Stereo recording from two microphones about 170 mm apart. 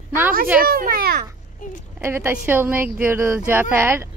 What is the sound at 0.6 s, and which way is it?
Speech, 60° right (ahead or behind).